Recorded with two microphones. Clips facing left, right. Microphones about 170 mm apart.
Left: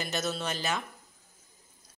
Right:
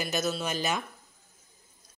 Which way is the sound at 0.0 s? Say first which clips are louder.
Right 2 dB; 5° right (ahead or behind).